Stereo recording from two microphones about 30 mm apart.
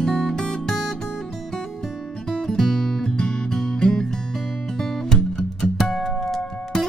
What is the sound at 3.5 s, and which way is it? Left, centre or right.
Music, centre.